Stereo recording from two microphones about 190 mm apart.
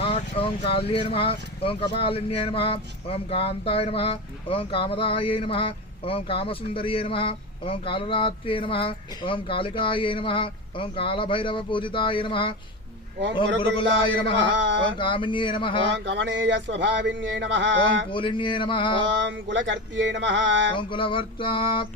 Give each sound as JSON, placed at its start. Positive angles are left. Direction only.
{"t": 0.0, "sound": "a sound", "side_deg": 30}
{"t": 0.7, "sound": "speech", "side_deg": 30}
{"t": 13.6, "sound": "speech", "side_deg": 25}
{"t": 15.8, "sound": "speech", "side_deg": -70}
{"t": 18.1, "sound": "speech", "side_deg": 25}
{"t": 19.0, "sound": "speech", "side_deg": -70}
{"t": 20.7, "sound": "speech", "side_deg": 25}